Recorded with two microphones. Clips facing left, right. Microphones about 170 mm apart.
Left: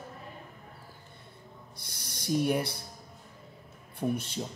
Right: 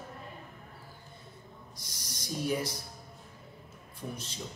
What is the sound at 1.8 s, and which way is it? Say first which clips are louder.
Speech: left 4 dB; 60° left (ahead or behind).